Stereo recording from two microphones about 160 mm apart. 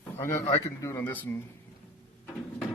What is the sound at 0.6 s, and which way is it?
Speech, 20° left (ahead or behind).